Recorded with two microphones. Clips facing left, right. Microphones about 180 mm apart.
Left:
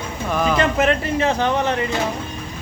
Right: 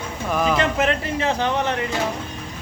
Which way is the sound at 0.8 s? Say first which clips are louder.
Left 3 dB; 50° left (ahead or behind).